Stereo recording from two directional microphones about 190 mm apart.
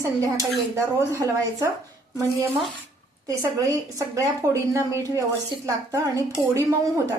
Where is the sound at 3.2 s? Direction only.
20° right (ahead or behind).